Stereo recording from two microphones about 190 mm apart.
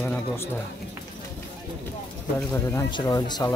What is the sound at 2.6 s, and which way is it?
Speech, 20° left (ahead or behind).